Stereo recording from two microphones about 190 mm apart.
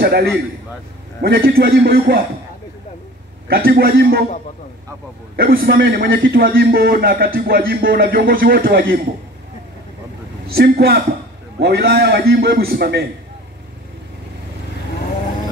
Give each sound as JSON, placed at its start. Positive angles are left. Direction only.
{"t": 0.0, "sound": "a man's voice", "side_deg": -60}
{"t": 3.4, "sound": "a man's voice", "side_deg": -50}
{"t": 5.3, "sound": "a man's voice", "side_deg": -50}
{"t": 10.5, "sound": "a man's voice", "side_deg": -55}